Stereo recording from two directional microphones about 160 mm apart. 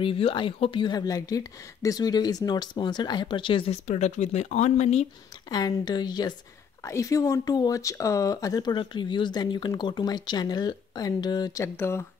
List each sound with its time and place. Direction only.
0.0 s speech: 35° left (ahead or behind)
3.8 s speech: 45° left (ahead or behind)
5.5 s speech: 25° left (ahead or behind)